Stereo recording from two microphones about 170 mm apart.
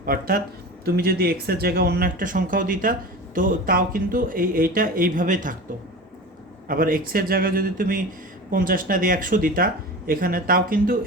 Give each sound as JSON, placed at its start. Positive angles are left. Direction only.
{"t": 0.0, "sound": "speech", "side_deg": -60}
{"t": 6.7, "sound": "speech", "side_deg": -55}